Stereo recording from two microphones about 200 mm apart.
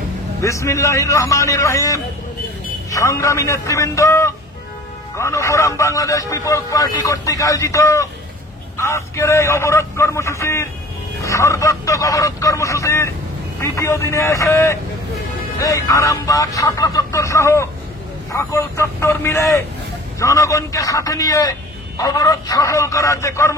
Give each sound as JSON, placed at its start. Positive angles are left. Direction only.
{"t": 0.4, "sound": "a man's voice", "side_deg": 15}